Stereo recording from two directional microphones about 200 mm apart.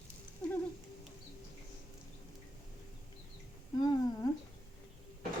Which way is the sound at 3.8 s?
20° left (ahead or behind).